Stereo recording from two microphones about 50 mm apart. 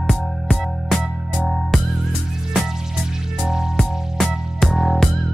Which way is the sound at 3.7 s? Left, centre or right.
Centre.